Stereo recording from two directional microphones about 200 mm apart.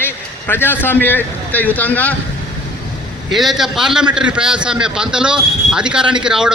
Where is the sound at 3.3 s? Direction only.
Centre (ahead or behind).